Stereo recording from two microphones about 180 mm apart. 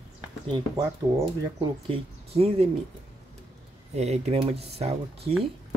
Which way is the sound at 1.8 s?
30° right (ahead or behind).